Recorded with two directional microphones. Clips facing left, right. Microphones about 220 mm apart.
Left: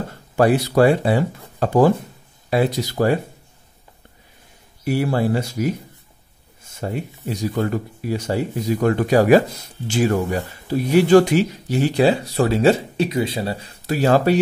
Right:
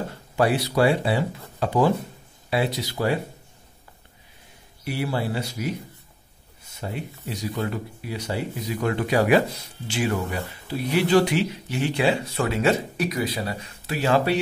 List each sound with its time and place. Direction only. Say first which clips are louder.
0.4 s speech: left 6 dB; 45° left (ahead or behind)
4.8 s speech: left 7 dB; 45° left (ahead or behind)
6.7 s speech: left 6 dB; 45° left (ahead or behind)